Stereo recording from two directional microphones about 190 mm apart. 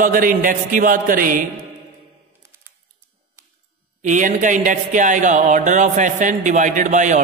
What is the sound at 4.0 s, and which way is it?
Speech, 40° right (ahead or behind).